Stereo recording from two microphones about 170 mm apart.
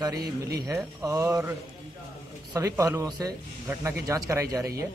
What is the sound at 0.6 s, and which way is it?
Speech, 20° right (ahead or behind).